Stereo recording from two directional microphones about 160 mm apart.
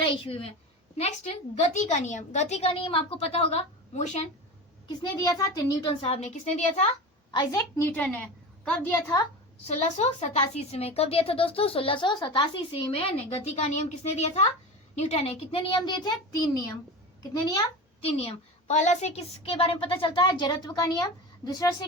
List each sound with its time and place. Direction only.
0.0 s a woman's voice: 35° left (ahead or behind)
5.2 s a child's voice: 20° left (ahead or behind); by 6.9 s 45° left (ahead or behind)
7.3 s a woman's voice: 30° left (ahead or behind)
7.8 s a woman's voice: 10° left (ahead or behind)
9.6 s a child's voice: 45° left (ahead or behind); by 21.8 s 25° left (ahead or behind)